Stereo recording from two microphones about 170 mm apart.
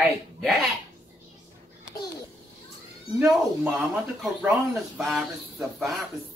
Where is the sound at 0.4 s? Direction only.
Centre (ahead or behind).